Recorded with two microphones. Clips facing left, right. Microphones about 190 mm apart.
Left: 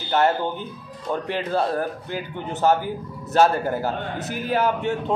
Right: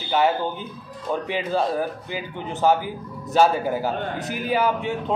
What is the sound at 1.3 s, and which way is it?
A man's voice, 10° right (ahead or behind).